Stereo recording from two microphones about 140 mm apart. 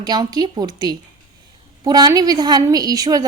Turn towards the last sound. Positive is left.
turn(degrees=-25)  # may be behind; listen again after turning